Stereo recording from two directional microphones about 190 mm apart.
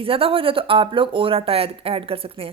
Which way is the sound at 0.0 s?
30° right (ahead or behind).